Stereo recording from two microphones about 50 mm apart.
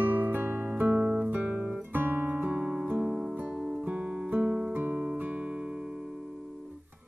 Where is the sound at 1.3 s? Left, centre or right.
Right.